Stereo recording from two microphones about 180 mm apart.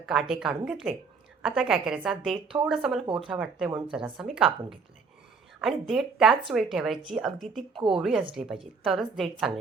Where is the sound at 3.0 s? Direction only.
25° right (ahead or behind).